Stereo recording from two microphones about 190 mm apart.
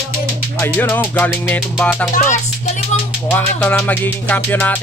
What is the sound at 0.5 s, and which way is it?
Music, 10° left (ahead or behind).